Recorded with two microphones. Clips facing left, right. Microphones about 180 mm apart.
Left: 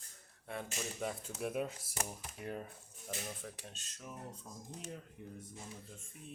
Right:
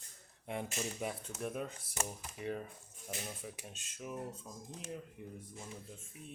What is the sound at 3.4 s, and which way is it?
Speech, 10° right (ahead or behind).